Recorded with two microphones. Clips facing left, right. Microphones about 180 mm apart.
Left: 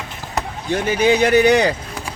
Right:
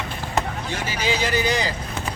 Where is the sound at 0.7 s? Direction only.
55° left (ahead or behind).